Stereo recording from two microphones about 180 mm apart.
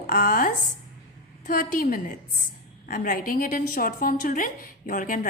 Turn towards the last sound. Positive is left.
turn(degrees=50)  # may be behind; listen again after turning